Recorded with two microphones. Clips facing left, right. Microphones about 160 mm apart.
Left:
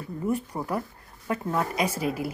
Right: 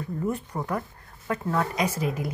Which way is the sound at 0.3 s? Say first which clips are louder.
Left 4 dB; 10° left (ahead or behind).